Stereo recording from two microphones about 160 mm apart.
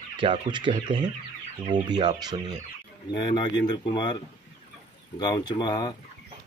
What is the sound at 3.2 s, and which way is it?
Speech, 30° left (ahead or behind).